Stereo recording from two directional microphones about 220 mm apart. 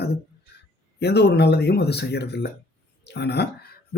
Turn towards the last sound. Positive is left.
turn(degrees=50)  # may be behind; listen again after turning